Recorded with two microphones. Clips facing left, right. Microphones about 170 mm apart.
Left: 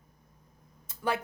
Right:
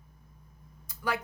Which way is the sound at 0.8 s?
30° left (ahead or behind).